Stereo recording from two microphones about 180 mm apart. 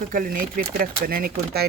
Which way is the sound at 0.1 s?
50° right (ahead or behind).